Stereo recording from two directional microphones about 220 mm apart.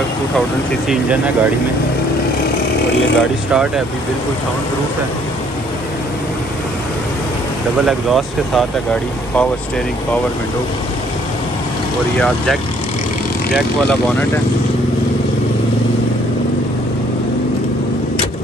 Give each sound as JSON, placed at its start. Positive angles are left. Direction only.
{"t": 0.8, "sound": "speech", "side_deg": -5}
{"t": 3.2, "sound": "speech", "side_deg": 0}
{"t": 7.8, "sound": "speech", "side_deg": 0}